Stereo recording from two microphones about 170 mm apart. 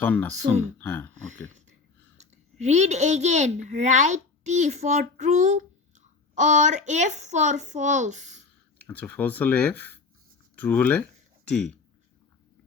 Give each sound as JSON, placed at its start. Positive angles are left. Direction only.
{"t": 0.0, "sound": "speech", "side_deg": 10}
{"t": 2.1, "sound": "a child's voice", "side_deg": -40}
{"t": 8.8, "sound": "speech", "side_deg": 10}